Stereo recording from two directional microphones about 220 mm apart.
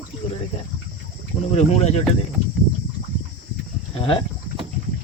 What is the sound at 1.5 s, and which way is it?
Speech, 30° left (ahead or behind).